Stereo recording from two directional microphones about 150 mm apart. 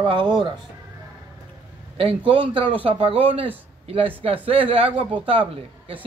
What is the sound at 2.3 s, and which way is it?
A man's voice, 35° right (ahead or behind).